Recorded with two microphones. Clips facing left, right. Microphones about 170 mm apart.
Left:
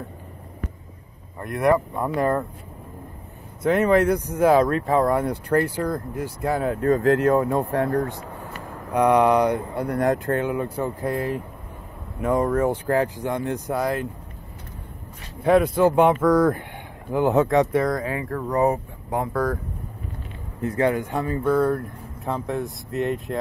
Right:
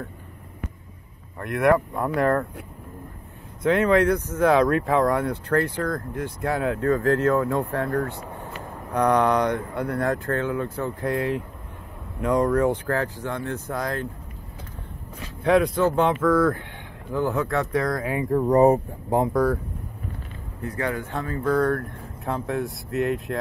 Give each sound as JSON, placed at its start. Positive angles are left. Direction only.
{"t": 1.4, "sound": "speech", "side_deg": 0}
{"t": 3.6, "sound": "speech", "side_deg": 5}
{"t": 6.9, "sound": "speech", "side_deg": 20}
{"t": 8.9, "sound": "speech", "side_deg": 10}
{"t": 15.4, "sound": "speech", "side_deg": 5}
{"t": 17.7, "sound": "speech", "side_deg": 0}
{"t": 18.0, "sound": "speech", "side_deg": -20}
{"t": 18.5, "sound": "speech", "side_deg": -30}
{"t": 19.2, "sound": "speech", "side_deg": -10}
{"t": 20.6, "sound": "a man's voice", "side_deg": 25}
{"t": 21.5, "sound": "speech", "side_deg": 5}